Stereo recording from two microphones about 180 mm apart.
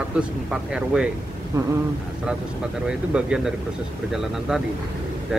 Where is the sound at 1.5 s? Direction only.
15° right (ahead or behind).